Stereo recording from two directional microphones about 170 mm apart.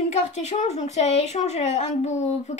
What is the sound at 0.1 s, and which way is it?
Speech, 40° left (ahead or behind).